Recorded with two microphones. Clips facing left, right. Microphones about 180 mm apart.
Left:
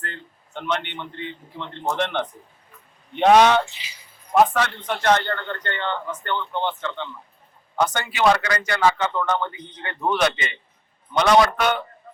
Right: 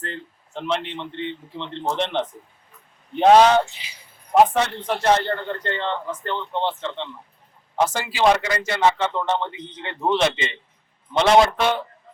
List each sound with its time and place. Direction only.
0.0 s a man's voice: 30° right (ahead or behind)
8.1 s a man's voice: 25° right (ahead or behind)